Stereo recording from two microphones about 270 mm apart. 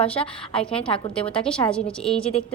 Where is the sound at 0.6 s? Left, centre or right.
Centre.